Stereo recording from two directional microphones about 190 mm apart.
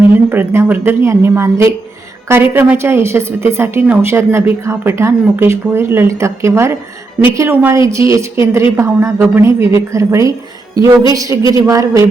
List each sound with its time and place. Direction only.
0.3 s a woman's voice: 10° right (ahead or behind)